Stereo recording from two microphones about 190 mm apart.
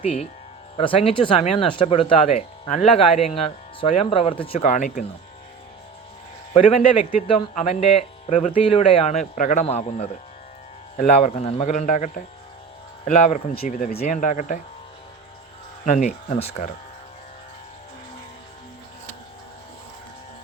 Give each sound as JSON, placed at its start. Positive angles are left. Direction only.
{"t": 0.0, "sound": "speech", "side_deg": 35}
{"t": 4.7, "sound": "speech", "side_deg": 40}
{"t": 6.7, "sound": "speech", "side_deg": 30}
{"t": 13.5, "sound": "speech", "side_deg": 50}
{"t": 16.0, "sound": "speech", "side_deg": 35}